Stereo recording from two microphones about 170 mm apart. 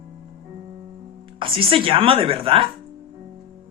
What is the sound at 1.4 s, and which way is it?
Speech, 30° right (ahead or behind).